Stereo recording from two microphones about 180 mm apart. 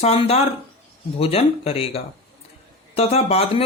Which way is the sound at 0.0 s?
35° left (ahead or behind).